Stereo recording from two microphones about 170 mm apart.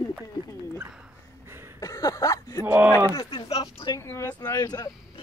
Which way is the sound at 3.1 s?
30° left (ahead or behind).